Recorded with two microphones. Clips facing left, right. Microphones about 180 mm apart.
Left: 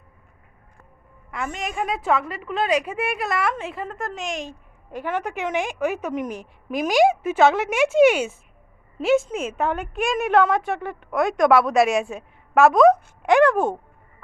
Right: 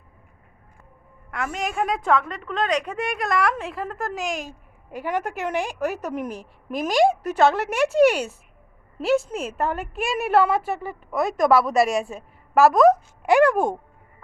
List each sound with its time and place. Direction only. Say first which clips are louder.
1.3 s a woman's voice: right 1 dB; centre (ahead or behind)
6.2 s a woman's voice: left 1 dB; 35° right (ahead or behind)
6.7 s a woman's voice: left 1 dB; centre (ahead or behind)